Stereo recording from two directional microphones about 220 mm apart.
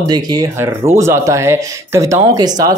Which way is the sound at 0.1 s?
15° right (ahead or behind).